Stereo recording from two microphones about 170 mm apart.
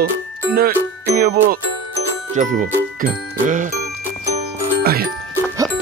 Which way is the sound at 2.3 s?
50° right (ahead or behind).